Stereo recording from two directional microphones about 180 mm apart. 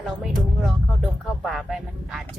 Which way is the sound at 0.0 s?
Centre (ahead or behind).